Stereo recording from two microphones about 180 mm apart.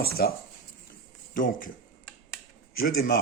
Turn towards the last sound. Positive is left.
turn(degrees=55)  # may be behind; listen again after turning